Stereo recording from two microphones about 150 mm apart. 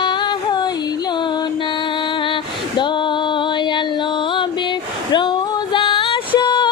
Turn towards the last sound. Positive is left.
turn(degrees=30)  # may be behind; listen again after turning